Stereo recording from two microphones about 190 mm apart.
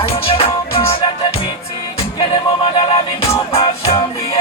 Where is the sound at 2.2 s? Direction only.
30° left (ahead or behind).